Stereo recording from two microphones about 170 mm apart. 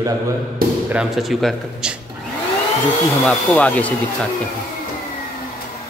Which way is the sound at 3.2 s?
5° left (ahead or behind).